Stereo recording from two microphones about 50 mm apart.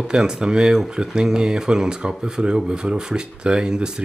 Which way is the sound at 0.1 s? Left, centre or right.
Centre.